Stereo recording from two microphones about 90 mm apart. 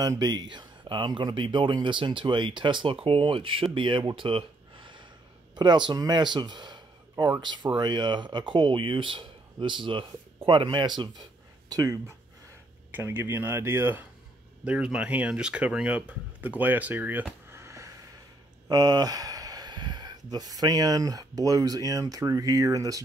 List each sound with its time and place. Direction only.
0.2 s speech: 55° right (ahead or behind)
4.1 s a sound: 80° right; by 5.0 s 65° right (ahead or behind)
5.5 s speech: 55° right (ahead or behind)
11.7 s speech: 40° right (ahead or behind)
12.9 s speech: 25° right (ahead or behind)
14.6 s speech: 10° right (ahead or behind); by 17.9 s 35° right (ahead or behind)
18.7 s speech: 45° right (ahead or behind)